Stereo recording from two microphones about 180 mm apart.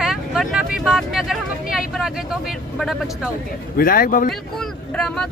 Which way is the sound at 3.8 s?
50° left (ahead or behind).